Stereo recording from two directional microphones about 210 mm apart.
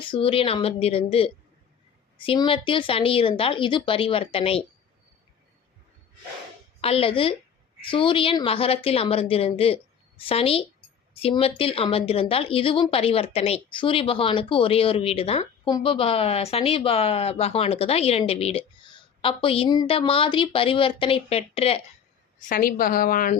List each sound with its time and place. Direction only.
0.0 s a woman's voice: 25° left (ahead or behind)
6.8 s a woman's voice: 25° left (ahead or behind)
22.4 s a woman's voice: 40° left (ahead or behind)